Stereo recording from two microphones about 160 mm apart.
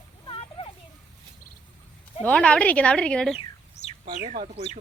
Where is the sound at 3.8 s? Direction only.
90° left.